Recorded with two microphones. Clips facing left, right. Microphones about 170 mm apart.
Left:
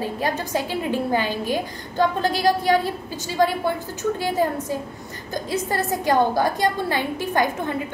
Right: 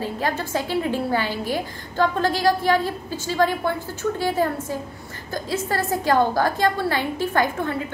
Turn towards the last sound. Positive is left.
turn(degrees=15)  # may be behind; listen again after turning